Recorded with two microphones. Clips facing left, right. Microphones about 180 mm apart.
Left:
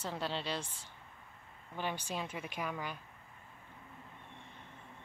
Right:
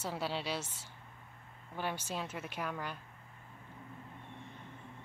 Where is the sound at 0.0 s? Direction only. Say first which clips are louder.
Right 1 dB; 10° right (ahead or behind).